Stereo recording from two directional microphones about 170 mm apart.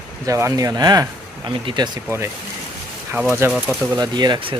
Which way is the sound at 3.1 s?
10° right (ahead or behind).